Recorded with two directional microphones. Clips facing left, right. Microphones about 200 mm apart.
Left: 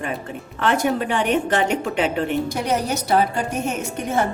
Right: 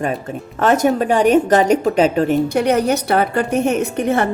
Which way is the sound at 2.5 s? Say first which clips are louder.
Right 7 dB; 60° right (ahead or behind).